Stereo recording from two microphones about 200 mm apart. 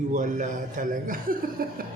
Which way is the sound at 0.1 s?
40° right (ahead or behind).